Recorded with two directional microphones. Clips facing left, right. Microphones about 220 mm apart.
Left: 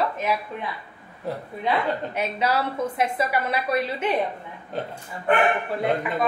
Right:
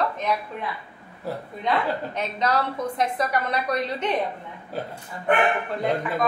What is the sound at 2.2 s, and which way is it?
A woman's voice, 10° left (ahead or behind).